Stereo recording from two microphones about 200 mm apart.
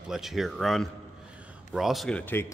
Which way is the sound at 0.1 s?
Centre (ahead or behind).